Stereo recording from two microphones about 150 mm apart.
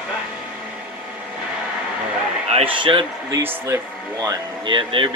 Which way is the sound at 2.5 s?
35° right (ahead or behind).